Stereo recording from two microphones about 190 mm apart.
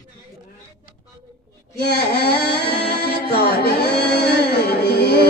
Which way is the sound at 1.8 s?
60° left (ahead or behind).